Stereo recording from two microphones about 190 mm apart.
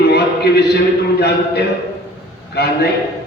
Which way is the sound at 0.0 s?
60° left (ahead or behind).